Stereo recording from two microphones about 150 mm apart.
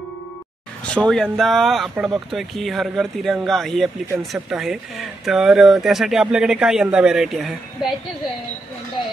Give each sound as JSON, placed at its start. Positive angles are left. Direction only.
{"t": 0.8, "sound": "speech", "side_deg": 5}